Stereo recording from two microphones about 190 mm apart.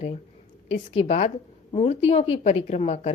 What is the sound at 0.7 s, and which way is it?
A woman's voice, 35° left (ahead or behind).